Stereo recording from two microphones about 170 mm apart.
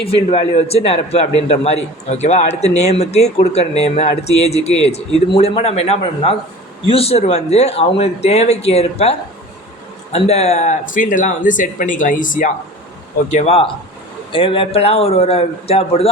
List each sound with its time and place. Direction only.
0.3 s a man's voice: 35° left (ahead or behind)
10.2 s speech: 40° left (ahead or behind)
13.3 s a man's voice: 40° left (ahead or behind)